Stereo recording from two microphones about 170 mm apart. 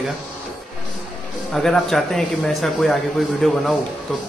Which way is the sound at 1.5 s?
5° left (ahead or behind).